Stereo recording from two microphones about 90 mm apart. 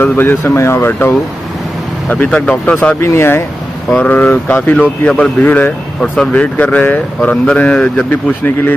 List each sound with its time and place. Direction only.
0.0 s speech: 20° left (ahead or behind)
2.0 s speech: 15° left (ahead or behind)
3.0 s speech: 25° left (ahead or behind)
3.9 s speech: 15° left (ahead or behind)